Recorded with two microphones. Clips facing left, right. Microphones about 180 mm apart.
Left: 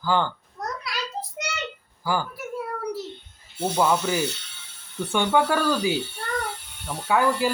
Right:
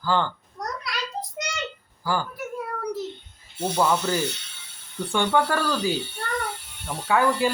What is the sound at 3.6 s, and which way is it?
Speech, 5° left (ahead or behind).